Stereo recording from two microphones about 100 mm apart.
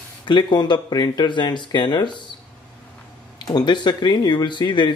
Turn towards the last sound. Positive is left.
turn(degrees=50)  # may be behind; listen again after turning